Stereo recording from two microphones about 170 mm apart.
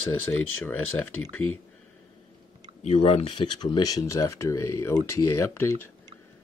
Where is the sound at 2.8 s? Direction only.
40° left (ahead or behind); by 5.7 s 15° left (ahead or behind).